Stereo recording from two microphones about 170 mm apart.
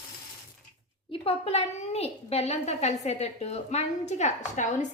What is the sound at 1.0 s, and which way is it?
A woman's voice, 35° left (ahead or behind).